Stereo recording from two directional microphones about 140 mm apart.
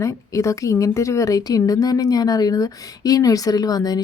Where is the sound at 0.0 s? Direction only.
25° left (ahead or behind).